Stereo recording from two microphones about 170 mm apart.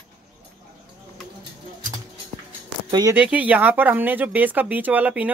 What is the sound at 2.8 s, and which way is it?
Speech, 25° right (ahead or behind).